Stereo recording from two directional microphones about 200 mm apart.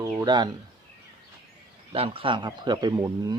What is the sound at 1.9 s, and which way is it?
Speech, 25° right (ahead or behind).